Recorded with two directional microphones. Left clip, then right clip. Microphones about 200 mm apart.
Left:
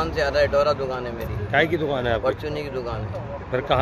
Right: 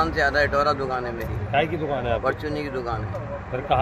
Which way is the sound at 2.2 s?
5° right (ahead or behind).